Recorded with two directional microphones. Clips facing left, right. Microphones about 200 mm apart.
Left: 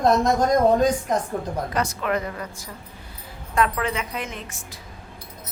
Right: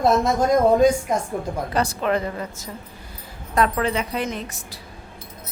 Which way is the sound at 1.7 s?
30° right (ahead or behind).